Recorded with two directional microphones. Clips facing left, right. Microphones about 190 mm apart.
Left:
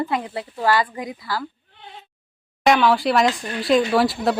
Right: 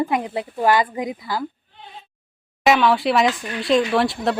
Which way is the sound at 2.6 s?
Centre (ahead or behind).